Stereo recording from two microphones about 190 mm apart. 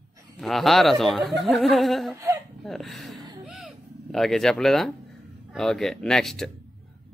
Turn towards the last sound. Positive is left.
turn(degrees=0)  # may be behind; listen again after turning